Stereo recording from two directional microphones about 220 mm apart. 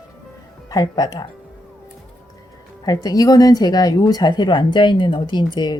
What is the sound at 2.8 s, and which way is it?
Speech, 15° left (ahead or behind).